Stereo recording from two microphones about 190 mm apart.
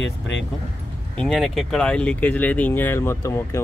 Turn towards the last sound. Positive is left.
turn(degrees=15)  # may be behind; listen again after turning